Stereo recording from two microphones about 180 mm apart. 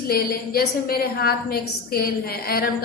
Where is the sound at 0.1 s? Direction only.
55° left (ahead or behind).